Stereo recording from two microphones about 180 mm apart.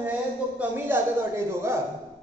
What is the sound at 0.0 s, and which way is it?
A man's voice, 10° right (ahead or behind).